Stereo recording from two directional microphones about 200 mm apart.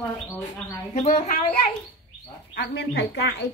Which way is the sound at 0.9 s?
35° left (ahead or behind).